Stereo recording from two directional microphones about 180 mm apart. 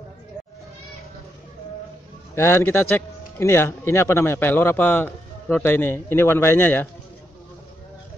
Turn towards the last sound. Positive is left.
turn(degrees=10)  # may be behind; listen again after turning